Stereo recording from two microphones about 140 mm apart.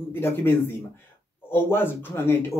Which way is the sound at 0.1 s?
15° left (ahead or behind).